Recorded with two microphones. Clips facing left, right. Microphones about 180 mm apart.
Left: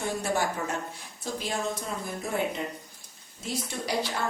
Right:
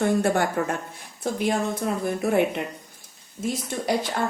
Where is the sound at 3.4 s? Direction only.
50° right (ahead or behind).